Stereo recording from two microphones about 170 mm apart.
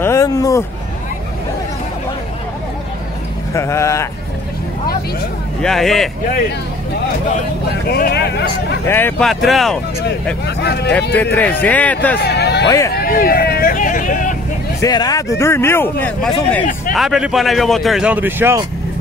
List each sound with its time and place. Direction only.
0.0 s a sound: 15° left (ahead or behind)
3.5 s speech: 15° left (ahead or behind)
5.6 s a man's voice: centre (ahead or behind)
7.9 s a man's voice: 70° left (ahead or behind)
8.8 s speech: 10° left (ahead or behind)
9.2 s a man's voice: centre (ahead or behind)
10.4 s a man's voice: 75° left (ahead or behind)
11.3 s speech: 10° left (ahead or behind)
12.2 s hubbub: 75° left (ahead or behind)
12.6 s speech: 20° left (ahead or behind)
12.9 s speech: 60° left (ahead or behind)
14.8 s speech: 20° left (ahead or behind)
16.9 s a man's voice: centre (ahead or behind)